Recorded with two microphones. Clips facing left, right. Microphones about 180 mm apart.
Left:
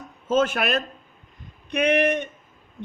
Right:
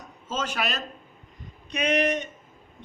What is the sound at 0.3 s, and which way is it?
A man's voice, 55° left (ahead or behind).